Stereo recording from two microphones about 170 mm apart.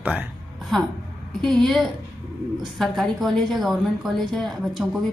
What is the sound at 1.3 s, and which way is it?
A woman's voice, centre (ahead or behind).